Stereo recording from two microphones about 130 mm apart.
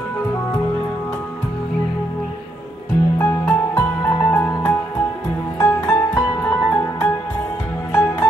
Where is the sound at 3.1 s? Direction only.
15° left (ahead or behind).